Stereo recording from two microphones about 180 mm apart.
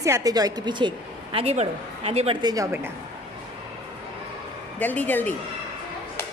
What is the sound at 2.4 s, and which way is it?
Speech, 20° right (ahead or behind).